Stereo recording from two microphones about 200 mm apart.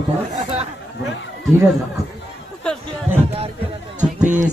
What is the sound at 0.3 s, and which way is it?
Chatter, 30° right (ahead or behind).